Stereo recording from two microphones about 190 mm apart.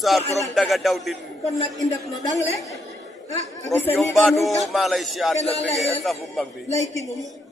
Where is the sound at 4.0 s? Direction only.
Centre (ahead or behind).